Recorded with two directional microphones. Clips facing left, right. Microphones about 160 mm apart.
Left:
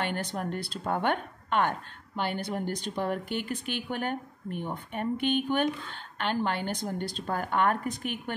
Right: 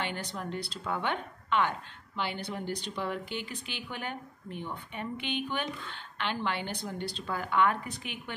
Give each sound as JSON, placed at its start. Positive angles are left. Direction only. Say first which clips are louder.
{"t": 0.0, "sound": "a woman's voice", "louder": "left 4 dB", "side_deg": 50}